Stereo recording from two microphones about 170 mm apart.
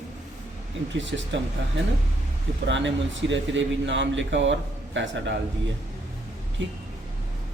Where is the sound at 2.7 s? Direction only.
90° right.